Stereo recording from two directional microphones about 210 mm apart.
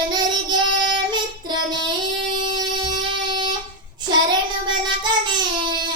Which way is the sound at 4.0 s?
20° right (ahead or behind).